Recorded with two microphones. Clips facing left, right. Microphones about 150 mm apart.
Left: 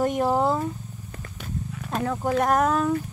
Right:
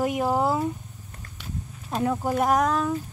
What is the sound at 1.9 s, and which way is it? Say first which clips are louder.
Speech: right 2 dB; 20° right (ahead or behind).